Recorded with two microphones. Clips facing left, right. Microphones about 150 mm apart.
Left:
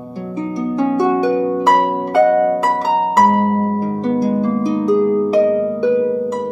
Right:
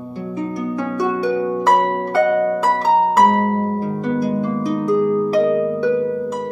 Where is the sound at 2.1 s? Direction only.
30° left (ahead or behind).